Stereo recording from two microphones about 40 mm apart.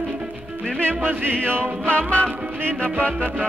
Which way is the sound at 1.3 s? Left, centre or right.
Left.